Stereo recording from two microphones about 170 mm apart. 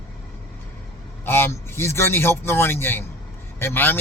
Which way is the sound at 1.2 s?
15° left (ahead or behind).